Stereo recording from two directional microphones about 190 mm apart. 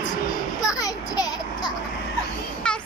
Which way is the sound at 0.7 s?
20° left (ahead or behind).